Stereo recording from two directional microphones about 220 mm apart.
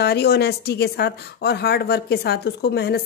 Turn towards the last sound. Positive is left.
turn(degrees=50)  # may be behind; listen again after turning